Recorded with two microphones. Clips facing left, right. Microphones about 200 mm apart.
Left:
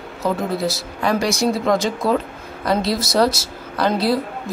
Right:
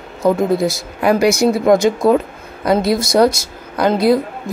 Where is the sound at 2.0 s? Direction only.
20° right (ahead or behind).